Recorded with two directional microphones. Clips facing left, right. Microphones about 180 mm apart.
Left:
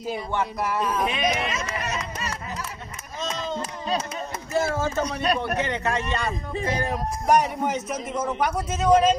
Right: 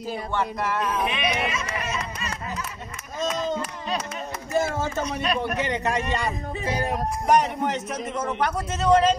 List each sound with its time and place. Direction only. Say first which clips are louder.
0.3 s speech: right 1 dB; 10° left (ahead or behind)
1.1 s speech: left 1 dB; 40° left (ahead or behind)
4.6 s a man's voice: left 1 dB; 15° right (ahead or behind)
7.2 s a man's voice: even; 5° left (ahead or behind)